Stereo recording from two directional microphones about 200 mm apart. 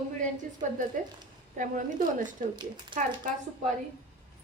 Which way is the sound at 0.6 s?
40° right (ahead or behind).